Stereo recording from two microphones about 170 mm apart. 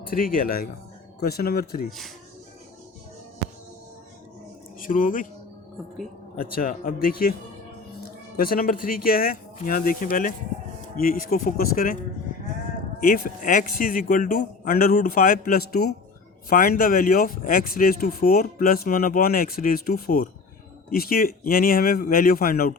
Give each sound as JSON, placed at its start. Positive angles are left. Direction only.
{"t": 0.0, "sound": "speech", "side_deg": 60}
{"t": 4.8, "sound": "speech", "side_deg": 50}
{"t": 6.4, "sound": "speech", "side_deg": 55}
{"t": 8.4, "sound": "speech", "side_deg": 60}
{"t": 13.0, "sound": "speech", "side_deg": 55}